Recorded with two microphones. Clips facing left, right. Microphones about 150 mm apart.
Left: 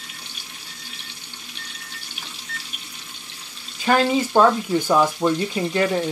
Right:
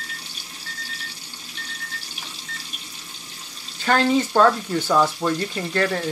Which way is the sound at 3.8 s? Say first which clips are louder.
Even; 15° left (ahead or behind).